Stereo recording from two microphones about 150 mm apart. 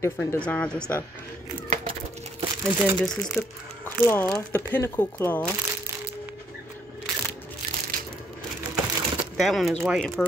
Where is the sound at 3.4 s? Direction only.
20° left (ahead or behind).